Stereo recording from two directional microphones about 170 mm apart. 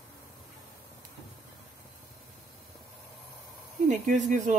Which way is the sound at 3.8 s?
45° right (ahead or behind).